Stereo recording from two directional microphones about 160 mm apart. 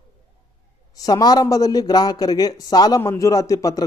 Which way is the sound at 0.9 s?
25° left (ahead or behind).